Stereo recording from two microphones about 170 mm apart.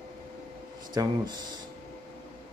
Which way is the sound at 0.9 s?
25° right (ahead or behind).